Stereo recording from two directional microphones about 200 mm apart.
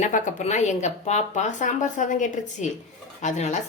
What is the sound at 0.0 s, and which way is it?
Speech, 40° left (ahead or behind).